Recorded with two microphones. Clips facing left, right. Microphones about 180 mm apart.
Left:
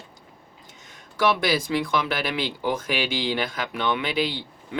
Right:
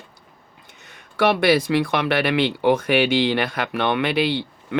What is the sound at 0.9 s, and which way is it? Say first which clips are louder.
Speech: right 3 dB; 60° right (ahead or behind).